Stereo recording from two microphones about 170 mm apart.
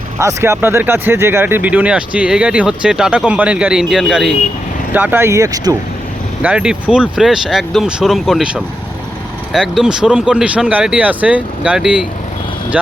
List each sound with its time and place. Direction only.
0.2 s speech: 15° right (ahead or behind); by 4.4 s centre (ahead or behind)
4.9 s speech: 10° right (ahead or behind)
6.4 s speech: 5° right (ahead or behind)